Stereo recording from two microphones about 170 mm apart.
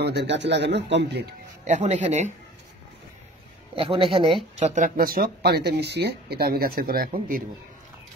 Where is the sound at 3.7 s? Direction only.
30° right (ahead or behind); by 7.4 s 55° right (ahead or behind).